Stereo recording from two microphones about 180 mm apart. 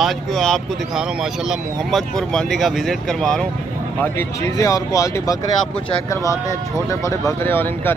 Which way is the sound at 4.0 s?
15° left (ahead or behind).